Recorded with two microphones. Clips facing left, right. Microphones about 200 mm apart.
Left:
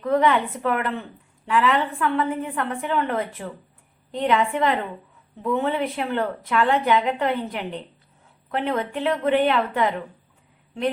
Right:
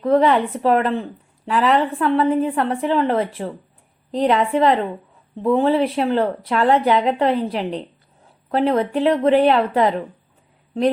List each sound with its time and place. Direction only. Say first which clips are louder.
0.0 s speech: right 4 dB; 35° right (ahead or behind)